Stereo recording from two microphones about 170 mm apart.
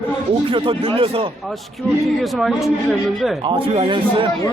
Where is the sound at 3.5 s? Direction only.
30° right (ahead or behind).